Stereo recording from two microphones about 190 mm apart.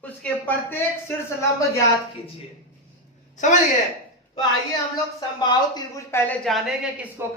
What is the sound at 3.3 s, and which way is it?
Speech, 40° left (ahead or behind).